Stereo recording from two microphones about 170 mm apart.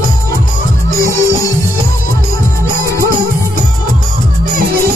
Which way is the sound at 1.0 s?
20° left (ahead or behind).